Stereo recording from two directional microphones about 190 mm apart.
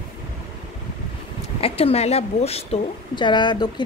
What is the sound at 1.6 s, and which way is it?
A woman's voice, 30° left (ahead or behind).